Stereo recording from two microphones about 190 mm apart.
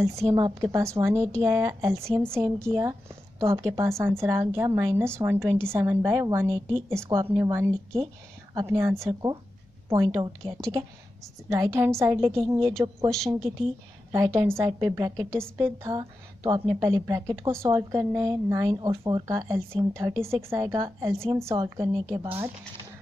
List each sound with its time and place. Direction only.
0.0 s a woman's voice: 15° right (ahead or behind)
14.1 s a woman's voice: 15° right (ahead or behind)